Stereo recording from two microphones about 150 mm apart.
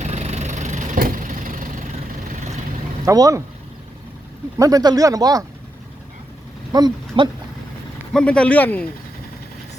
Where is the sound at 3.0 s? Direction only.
25° right (ahead or behind).